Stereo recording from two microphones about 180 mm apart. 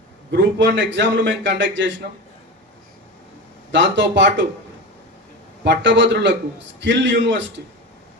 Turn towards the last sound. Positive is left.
turn(degrees=-85)